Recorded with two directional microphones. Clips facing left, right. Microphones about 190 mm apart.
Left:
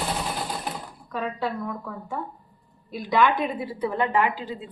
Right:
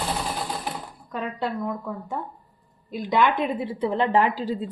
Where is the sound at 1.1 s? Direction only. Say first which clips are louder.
Even; 15° right (ahead or behind).